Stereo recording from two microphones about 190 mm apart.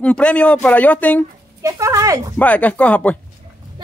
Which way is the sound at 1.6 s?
15° right (ahead or behind).